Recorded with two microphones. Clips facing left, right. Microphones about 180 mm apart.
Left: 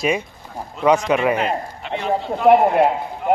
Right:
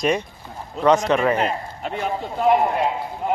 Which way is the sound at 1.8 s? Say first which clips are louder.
Left 1 dB; 40° right (ahead or behind).